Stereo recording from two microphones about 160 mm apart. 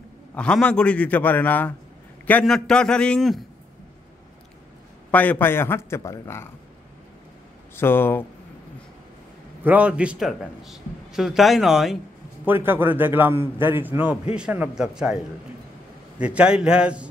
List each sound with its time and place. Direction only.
0.3 s a man's voice: 5° left (ahead or behind)
5.1 s a man's voice: 10° left (ahead or behind)
7.7 s a man's voice: 15° left (ahead or behind)
9.6 s a man's voice: 10° right (ahead or behind)
12.4 s a man's voice: 15° right (ahead or behind)
16.2 s a man's voice: 5° right (ahead or behind)